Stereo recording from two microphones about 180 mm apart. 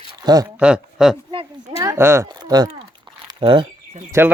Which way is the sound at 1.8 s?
15° right (ahead or behind).